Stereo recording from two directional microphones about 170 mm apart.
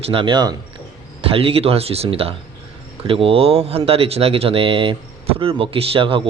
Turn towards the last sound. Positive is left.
turn(degrees=-30)  # may be behind; listen again after turning